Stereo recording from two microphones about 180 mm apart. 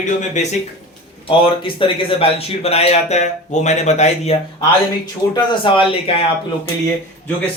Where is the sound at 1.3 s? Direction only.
30° left (ahead or behind).